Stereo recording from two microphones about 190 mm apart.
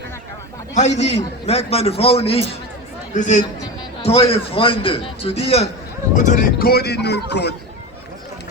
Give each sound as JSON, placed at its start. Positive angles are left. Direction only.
{"t": 0.7, "sound": "a man's voice", "side_deg": 35}
{"t": 3.4, "sound": "a man's voice", "side_deg": 25}